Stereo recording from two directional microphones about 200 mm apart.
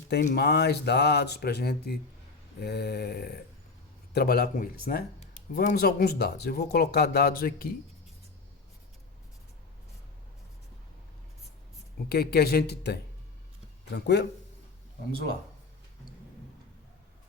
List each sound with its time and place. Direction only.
0.2 s speech: 45° left (ahead or behind)
5.8 s speech: 50° left (ahead or behind)
12.0 s speech: 50° left (ahead or behind)